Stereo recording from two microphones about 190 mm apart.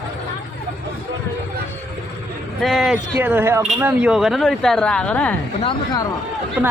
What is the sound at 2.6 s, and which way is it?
Speech, centre (ahead or behind).